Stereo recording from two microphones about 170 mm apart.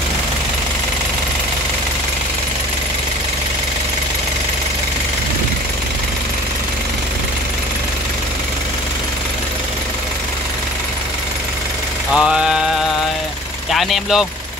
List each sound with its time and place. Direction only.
12.1 s mantra: 5° right (ahead or behind)
13.7 s speech: centre (ahead or behind)